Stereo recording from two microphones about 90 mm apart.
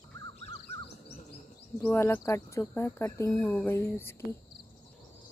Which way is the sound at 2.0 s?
30° left (ahead or behind).